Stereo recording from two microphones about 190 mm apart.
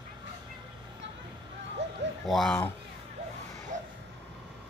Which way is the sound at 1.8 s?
65° right (ahead or behind).